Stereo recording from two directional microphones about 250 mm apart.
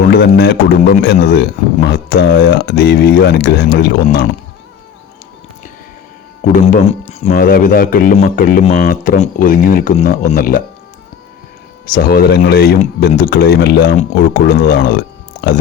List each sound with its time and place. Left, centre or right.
0.1 s speech: left
6.5 s speech: left
11.9 s speech: left